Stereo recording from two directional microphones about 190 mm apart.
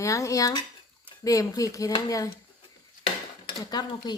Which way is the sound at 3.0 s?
25° left (ahead or behind).